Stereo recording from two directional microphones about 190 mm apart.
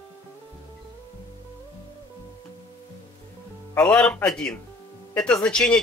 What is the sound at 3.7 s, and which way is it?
Speech, 5° left (ahead or behind).